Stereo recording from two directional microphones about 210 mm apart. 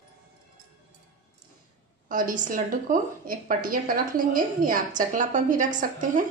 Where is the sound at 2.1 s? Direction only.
40° right (ahead or behind).